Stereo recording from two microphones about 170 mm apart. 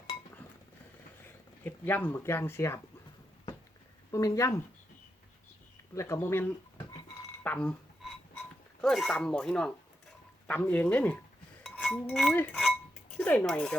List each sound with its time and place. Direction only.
1.2 s speech: 10° left (ahead or behind)
4.1 s speech: 20° left (ahead or behind)
5.9 s speech: 15° left (ahead or behind)
8.8 s speech: centre (ahead or behind)
11.6 s dishes: 5° left (ahead or behind)